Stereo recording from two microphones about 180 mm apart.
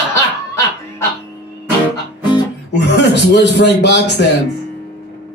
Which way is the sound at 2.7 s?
70° left (ahead or behind).